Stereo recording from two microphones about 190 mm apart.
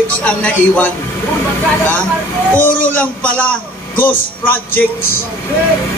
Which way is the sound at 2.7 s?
45° left (ahead or behind).